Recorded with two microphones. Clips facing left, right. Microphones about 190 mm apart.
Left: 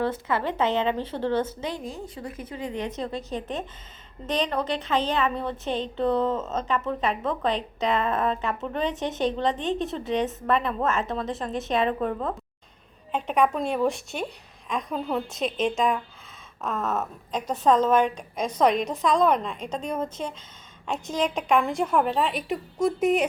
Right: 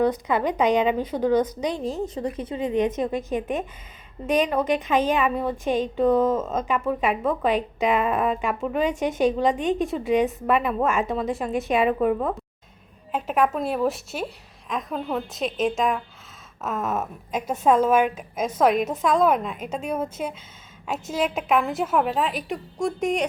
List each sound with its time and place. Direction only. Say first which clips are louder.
0.0 s a woman's voice: right 4 dB; 15° right (ahead or behind)
1.8 s a woman's voice: right 8 dB; 40° right (ahead or behind)
2.2 s a woman's voice: right 4 dB; 25° right (ahead or behind); by 23.3 s 5° left (ahead or behind)